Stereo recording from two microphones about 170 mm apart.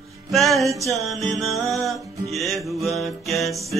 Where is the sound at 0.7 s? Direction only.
20° right (ahead or behind).